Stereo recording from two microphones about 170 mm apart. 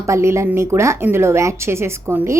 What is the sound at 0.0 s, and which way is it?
Speech, 15° right (ahead or behind).